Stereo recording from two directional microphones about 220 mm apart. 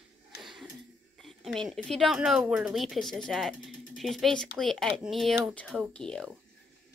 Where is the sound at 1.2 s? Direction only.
Centre (ahead or behind).